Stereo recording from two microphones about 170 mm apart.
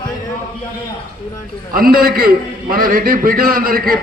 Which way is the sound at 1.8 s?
60° right (ahead or behind).